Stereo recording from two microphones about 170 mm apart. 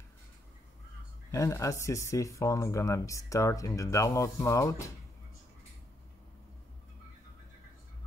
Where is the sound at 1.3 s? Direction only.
20° left (ahead or behind).